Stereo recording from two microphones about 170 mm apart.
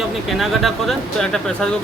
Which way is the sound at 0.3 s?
Centre (ahead or behind).